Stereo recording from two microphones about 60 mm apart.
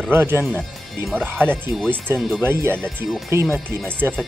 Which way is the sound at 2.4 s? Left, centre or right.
Right.